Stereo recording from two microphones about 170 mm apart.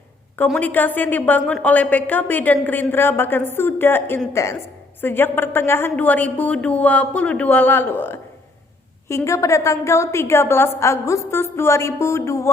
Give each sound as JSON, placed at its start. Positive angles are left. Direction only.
{"t": 0.5, "sound": "a woman's voice", "side_deg": 10}